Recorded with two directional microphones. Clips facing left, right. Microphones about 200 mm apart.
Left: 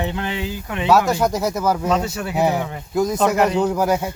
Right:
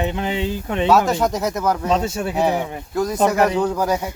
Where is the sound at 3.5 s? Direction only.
10° left (ahead or behind).